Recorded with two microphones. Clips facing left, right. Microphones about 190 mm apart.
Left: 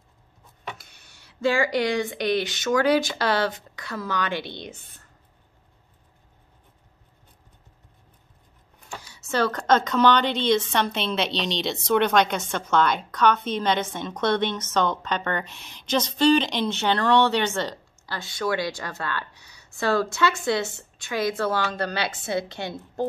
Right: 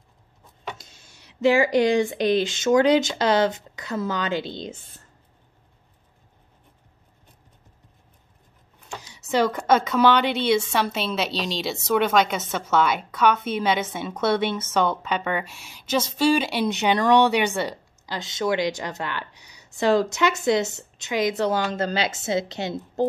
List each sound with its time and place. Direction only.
0.8 s speech: 25° right (ahead or behind)
8.8 s a sound: 20° right (ahead or behind)
9.3 s a woman's voice: 10° right (ahead or behind)